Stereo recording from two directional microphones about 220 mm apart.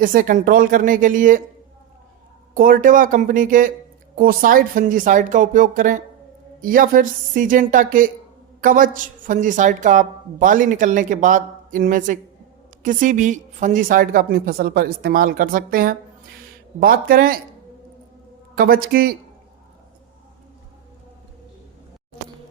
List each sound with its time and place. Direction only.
0.0 s a woman's voice: 40° right (ahead or behind)
2.6 s a woman's voice: 40° right (ahead or behind)
18.5 s speech: 40° right (ahead or behind)